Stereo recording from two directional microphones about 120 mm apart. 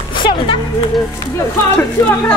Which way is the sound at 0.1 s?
40° left (ahead or behind).